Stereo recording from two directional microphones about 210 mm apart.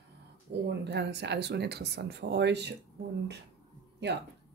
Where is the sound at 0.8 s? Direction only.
55° right (ahead or behind).